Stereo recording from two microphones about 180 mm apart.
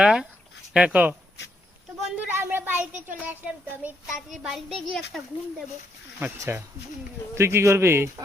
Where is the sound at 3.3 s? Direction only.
10° right (ahead or behind).